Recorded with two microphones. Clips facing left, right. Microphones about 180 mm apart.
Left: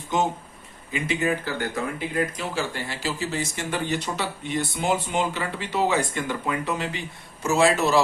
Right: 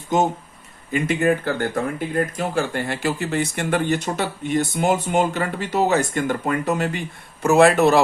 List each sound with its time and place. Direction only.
0.9 s speech: 50° right (ahead or behind)